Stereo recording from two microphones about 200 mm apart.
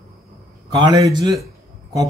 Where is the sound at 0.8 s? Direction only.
20° right (ahead or behind).